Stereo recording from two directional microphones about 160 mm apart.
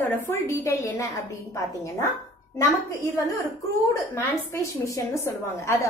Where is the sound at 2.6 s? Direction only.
20° left (ahead or behind).